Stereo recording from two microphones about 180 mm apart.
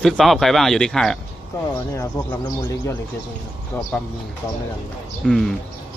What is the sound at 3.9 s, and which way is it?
Speech, 10° left (ahead or behind).